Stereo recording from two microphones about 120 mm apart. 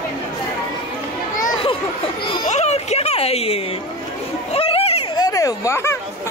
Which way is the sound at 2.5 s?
65° left (ahead or behind).